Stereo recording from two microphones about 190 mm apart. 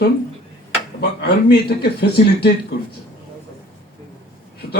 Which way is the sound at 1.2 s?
60° left (ahead or behind).